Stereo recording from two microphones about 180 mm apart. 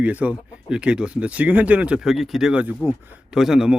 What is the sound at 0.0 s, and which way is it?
A man's voice, 10° right (ahead or behind).